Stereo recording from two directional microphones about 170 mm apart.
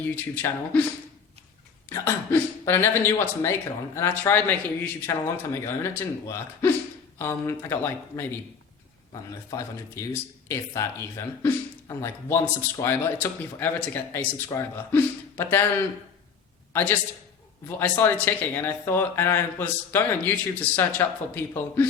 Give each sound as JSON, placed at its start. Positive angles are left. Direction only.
{"t": 0.0, "sound": "speech", "side_deg": 10}
{"t": 1.9, "sound": "speech", "side_deg": 15}
{"t": 16.7, "sound": "speech", "side_deg": 10}